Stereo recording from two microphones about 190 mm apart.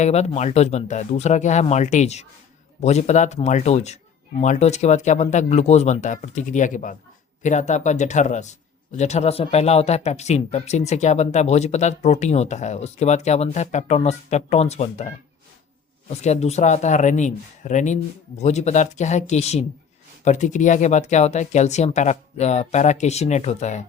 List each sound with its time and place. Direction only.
0.0 s speech: 35° left (ahead or behind)